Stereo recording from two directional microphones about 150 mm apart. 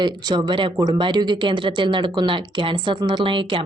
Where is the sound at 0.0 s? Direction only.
30° right (ahead or behind).